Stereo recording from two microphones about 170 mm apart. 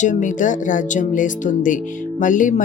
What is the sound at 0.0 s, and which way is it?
Speech, 45° left (ahead or behind).